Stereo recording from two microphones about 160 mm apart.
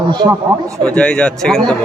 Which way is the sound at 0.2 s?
35° right (ahead or behind).